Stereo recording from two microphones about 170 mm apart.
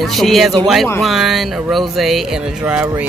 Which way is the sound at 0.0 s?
Centre (ahead or behind).